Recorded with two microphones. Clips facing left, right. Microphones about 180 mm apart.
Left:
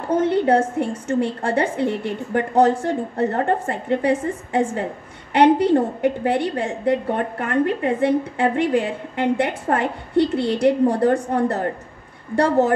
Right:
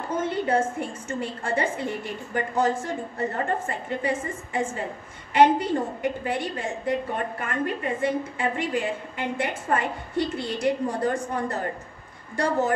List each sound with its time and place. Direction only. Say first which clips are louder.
0.1 s a woman's voice: left 8 dB; 70° left (ahead or behind)